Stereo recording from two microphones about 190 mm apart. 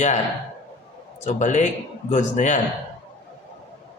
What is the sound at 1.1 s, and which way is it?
A man's voice, 40° left (ahead or behind).